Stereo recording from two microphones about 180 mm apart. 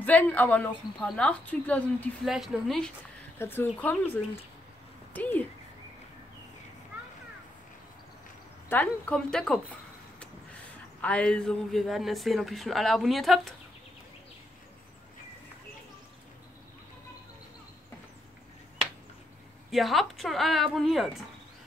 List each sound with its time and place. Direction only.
0.0 s speech: 10° left (ahead or behind)
3.3 s speech: 10° left (ahead or behind)
8.6 s speech: 10° left (ahead or behind)
19.7 s speech: centre (ahead or behind)